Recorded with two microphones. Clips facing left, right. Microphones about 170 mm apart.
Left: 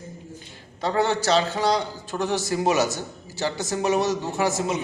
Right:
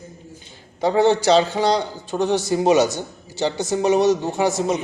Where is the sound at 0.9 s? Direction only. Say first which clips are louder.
Right 6 dB; 20° right (ahead or behind).